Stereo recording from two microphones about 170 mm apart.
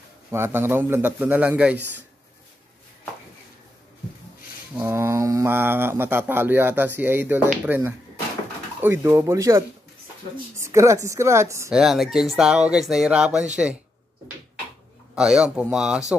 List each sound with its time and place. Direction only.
0.3 s speech: 15° right (ahead or behind)
4.7 s speech: 15° right (ahead or behind)
11.7 s speech: centre (ahead or behind)
15.1 s speech: 5° right (ahead or behind)